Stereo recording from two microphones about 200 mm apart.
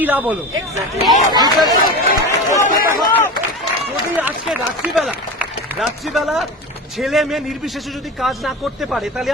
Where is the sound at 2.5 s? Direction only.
40° left (ahead or behind).